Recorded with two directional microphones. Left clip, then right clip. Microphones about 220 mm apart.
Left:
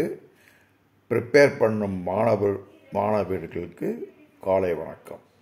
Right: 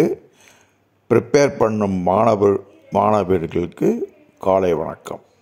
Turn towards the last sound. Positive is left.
turn(degrees=-35)  # may be behind; listen again after turning